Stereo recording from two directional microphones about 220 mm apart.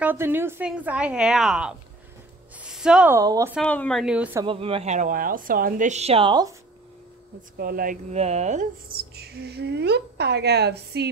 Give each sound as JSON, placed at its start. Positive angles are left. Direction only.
{"t": 0.0, "sound": "a woman's voice", "side_deg": -10}
{"t": 3.5, "sound": "a woman's voice", "side_deg": 5}
{"t": 4.5, "sound": "a woman's voice", "side_deg": -25}
{"t": 7.5, "sound": "speech", "side_deg": -40}